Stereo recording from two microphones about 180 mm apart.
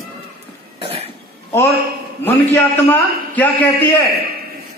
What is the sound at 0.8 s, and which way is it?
Cough, 35° right (ahead or behind).